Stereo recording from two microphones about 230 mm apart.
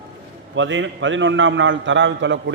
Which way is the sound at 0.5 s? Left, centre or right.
Right.